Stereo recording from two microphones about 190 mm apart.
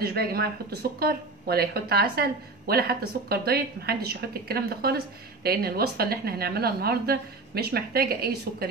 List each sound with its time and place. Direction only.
0.0 s speech: 55° right (ahead or behind)